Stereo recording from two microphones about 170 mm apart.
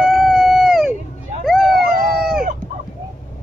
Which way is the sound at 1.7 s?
60° right (ahead or behind).